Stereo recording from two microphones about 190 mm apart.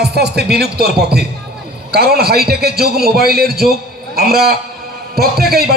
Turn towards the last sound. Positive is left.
turn(degrees=-55)  # may be behind; listen again after turning